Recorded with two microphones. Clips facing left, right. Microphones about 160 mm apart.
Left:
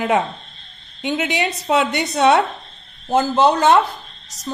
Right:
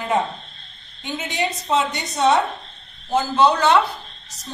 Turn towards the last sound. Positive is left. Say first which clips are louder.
# left 2 dB
turn(degrees=50)  # may be behind; listen again after turning